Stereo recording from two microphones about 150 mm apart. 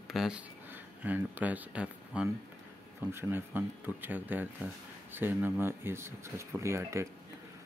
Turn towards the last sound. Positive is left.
turn(degrees=-20)  # may be behind; listen again after turning